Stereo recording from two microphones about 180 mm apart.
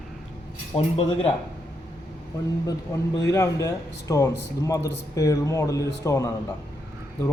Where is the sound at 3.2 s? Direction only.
15° left (ahead or behind).